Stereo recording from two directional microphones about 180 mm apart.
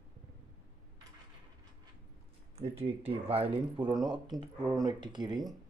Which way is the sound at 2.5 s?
35° right (ahead or behind).